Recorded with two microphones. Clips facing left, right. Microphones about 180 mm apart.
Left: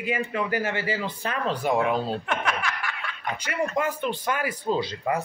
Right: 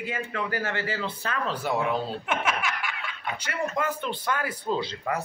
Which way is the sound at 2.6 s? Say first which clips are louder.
Even; 20° right (ahead or behind).